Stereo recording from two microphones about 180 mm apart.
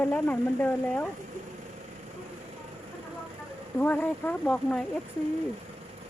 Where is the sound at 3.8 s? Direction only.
10° left (ahead or behind).